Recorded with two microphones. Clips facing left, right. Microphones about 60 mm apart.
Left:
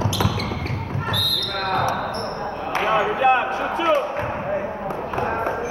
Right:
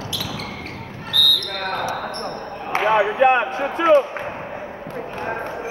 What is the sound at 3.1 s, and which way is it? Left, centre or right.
Basketball bounce, right.